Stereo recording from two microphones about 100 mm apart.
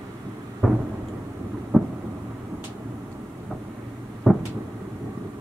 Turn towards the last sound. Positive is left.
turn(degrees=0)  # may be behind; listen again after turning